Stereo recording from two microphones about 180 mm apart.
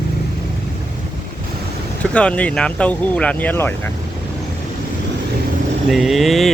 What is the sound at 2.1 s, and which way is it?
Speech, 5° left (ahead or behind).